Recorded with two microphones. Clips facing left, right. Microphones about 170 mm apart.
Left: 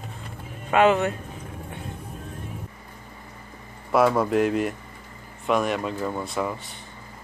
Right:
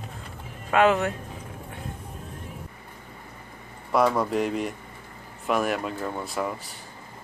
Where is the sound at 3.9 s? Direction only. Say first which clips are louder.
Left 3 dB; 5° left (ahead or behind).